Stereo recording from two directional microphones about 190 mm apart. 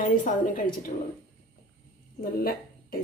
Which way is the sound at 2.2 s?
50° left (ahead or behind).